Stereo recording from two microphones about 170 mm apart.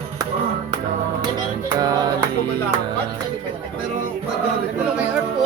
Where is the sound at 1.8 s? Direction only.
20° right (ahead or behind).